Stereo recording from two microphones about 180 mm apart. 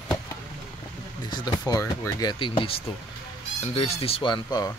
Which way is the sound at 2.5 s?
30° left (ahead or behind).